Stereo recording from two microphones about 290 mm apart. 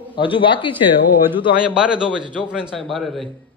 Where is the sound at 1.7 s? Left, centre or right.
Centre.